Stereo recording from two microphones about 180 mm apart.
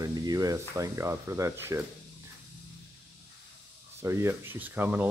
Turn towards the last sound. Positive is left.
turn(degrees=-10)  # may be behind; listen again after turning